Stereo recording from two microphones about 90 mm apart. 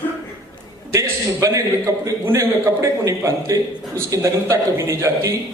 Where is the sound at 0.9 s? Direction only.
35° right (ahead or behind).